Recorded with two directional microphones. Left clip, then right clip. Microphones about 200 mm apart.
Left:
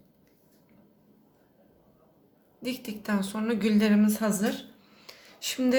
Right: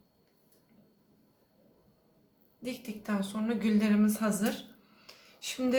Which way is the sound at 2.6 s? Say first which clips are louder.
Left 5 dB; 30° left (ahead or behind).